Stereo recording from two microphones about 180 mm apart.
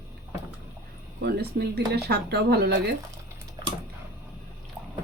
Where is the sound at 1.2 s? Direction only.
60° right (ahead or behind).